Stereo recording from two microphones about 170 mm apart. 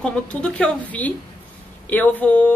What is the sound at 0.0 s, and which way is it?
Speech, 5° left (ahead or behind).